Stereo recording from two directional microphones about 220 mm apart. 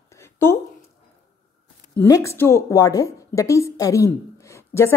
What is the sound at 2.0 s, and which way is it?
A woman's voice, 15° left (ahead or behind).